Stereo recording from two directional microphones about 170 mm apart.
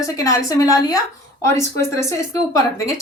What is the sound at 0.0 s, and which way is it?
A woman's voice, 20° left (ahead or behind).